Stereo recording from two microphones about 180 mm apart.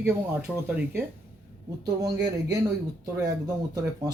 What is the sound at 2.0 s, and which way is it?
Speech, 20° right (ahead or behind).